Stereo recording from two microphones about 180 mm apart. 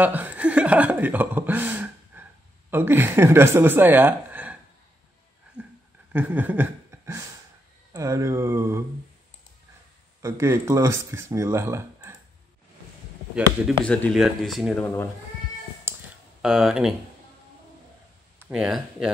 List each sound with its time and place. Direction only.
0.0 s speech: 10° right (ahead or behind)
6.1 s a sound: 10° right (ahead or behind)
7.9 s speech: 15° right (ahead or behind)
10.2 s speech: 15° right (ahead or behind)
13.8 s speech: 5° left (ahead or behind)
15.9 s a sound: 10° right (ahead or behind)
16.4 s speech: 5° right (ahead or behind)
18.5 s speech: 5° right (ahead or behind)